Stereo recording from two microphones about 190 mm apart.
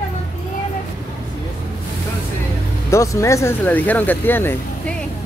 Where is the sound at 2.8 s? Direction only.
15° left (ahead or behind).